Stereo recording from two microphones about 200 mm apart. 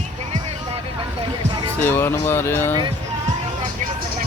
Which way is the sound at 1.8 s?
10° left (ahead or behind).